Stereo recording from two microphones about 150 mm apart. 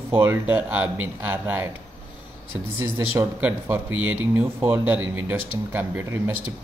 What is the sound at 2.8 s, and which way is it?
Speech, 15° right (ahead or behind).